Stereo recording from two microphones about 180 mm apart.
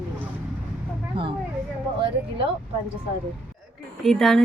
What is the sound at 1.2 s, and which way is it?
Speech, 30° right (ahead or behind).